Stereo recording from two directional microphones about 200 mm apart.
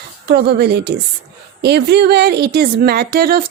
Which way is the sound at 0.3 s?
55° right (ahead or behind).